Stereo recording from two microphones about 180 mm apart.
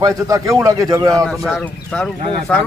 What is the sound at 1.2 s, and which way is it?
Speech, 5° left (ahead or behind).